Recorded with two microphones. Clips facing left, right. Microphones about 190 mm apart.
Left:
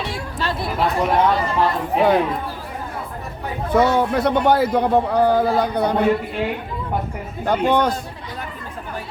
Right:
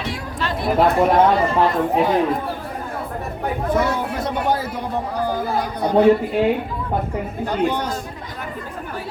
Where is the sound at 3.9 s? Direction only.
65° left (ahead or behind).